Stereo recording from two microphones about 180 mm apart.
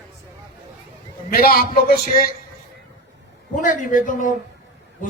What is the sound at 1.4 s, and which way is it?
Speech, 55° left (ahead or behind).